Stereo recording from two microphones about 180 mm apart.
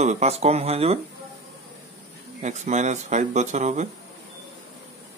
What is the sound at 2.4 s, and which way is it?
Speech, 40° right (ahead or behind).